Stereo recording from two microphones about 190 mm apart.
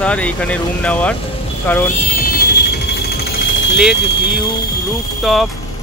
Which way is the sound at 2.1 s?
50° left (ahead or behind).